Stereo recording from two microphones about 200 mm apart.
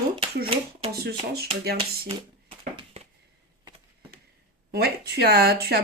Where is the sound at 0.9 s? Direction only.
50° right (ahead or behind).